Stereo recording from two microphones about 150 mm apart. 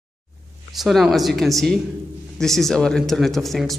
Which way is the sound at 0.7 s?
Centre (ahead or behind).